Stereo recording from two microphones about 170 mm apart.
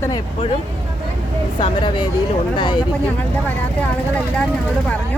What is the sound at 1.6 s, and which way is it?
Speech, 30° left (ahead or behind).